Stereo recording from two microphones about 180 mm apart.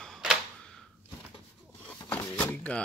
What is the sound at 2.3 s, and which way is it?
Speech, 10° left (ahead or behind).